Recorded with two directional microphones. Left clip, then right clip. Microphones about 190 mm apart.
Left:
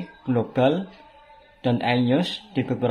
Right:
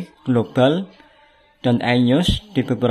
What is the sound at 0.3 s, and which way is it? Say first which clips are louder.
Speech: right 4 dB; 35° right (ahead or behind).